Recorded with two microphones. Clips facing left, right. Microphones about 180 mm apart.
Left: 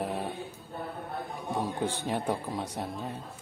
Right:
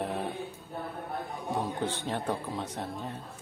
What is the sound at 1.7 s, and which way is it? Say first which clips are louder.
Speech: left 1 dB; 10° left (ahead or behind).